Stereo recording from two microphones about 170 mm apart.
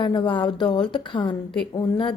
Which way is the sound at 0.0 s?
25° left (ahead or behind).